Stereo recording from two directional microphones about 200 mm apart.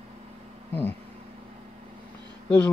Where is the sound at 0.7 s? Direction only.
10° left (ahead or behind).